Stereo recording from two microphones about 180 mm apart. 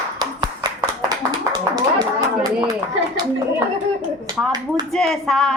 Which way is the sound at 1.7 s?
20° right (ahead or behind).